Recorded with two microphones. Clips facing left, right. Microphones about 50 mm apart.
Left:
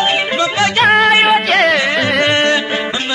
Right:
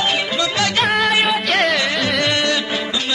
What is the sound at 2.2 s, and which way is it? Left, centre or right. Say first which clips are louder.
Music: left 6 dB; left.